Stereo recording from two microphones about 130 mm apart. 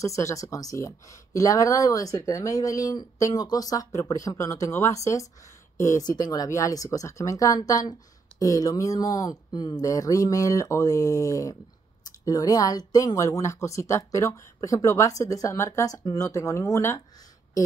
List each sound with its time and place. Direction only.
0.0 s speech: 25° left (ahead or behind)